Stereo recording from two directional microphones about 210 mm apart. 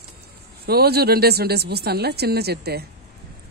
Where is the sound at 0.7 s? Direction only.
50° right (ahead or behind).